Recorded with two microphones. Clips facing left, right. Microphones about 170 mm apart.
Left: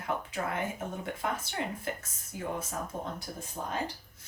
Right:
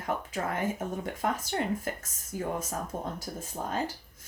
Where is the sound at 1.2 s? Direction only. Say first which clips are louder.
Right 4 dB; 40° right (ahead or behind).